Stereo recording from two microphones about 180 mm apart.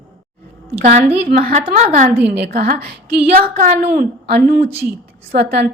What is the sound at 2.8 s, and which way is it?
Speech, 65° right (ahead or behind).